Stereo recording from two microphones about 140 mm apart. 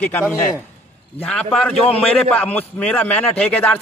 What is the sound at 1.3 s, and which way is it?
A man's voice, 5° left (ahead or behind).